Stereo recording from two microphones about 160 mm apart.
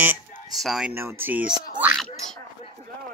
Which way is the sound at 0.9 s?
15° right (ahead or behind).